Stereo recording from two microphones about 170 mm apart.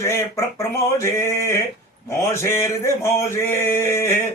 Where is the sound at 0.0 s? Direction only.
15° left (ahead or behind).